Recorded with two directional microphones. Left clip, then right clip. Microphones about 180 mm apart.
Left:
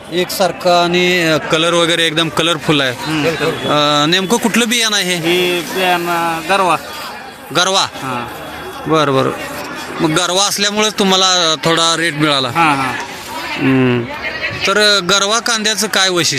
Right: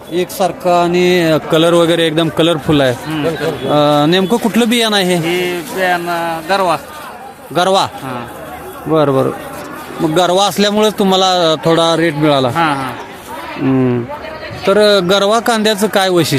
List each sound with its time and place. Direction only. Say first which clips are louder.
0.1 s speech: even; 5° right (ahead or behind)
8.9 s a man's voice: right 1 dB; 10° right (ahead or behind)